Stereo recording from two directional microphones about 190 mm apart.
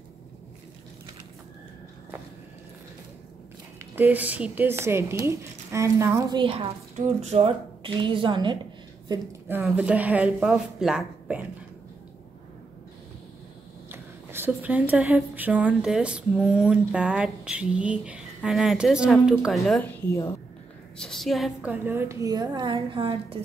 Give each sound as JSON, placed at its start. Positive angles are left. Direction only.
{"t": 3.9, "sound": "speech", "side_deg": -10}
{"t": 6.4, "sound": "a woman's voice", "side_deg": -30}
{"t": 9.5, "sound": "speech", "side_deg": -10}
{"t": 13.8, "sound": "a woman's voice", "side_deg": -10}
{"t": 21.0, "sound": "speech", "side_deg": 0}